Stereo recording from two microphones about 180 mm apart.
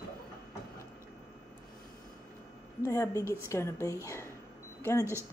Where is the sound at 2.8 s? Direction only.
20° left (ahead or behind).